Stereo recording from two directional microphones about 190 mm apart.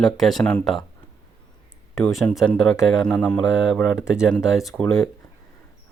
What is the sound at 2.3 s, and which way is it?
Speech, 5° left (ahead or behind).